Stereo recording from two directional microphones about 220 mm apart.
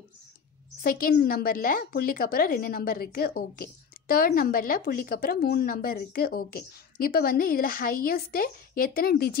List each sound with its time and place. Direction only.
0.8 s a woman's voice: 40° left (ahead or behind)